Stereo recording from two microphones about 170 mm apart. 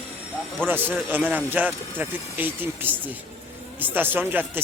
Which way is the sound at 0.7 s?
10° right (ahead or behind).